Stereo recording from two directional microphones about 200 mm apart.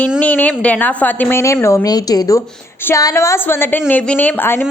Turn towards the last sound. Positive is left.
turn(degrees=10)  # may be behind; listen again after turning